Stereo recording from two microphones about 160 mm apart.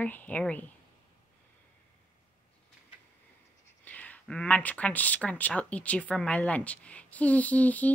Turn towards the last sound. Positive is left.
turn(degrees=10)  # may be behind; listen again after turning